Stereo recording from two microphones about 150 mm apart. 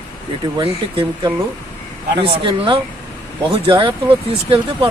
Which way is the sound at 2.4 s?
35° right (ahead or behind).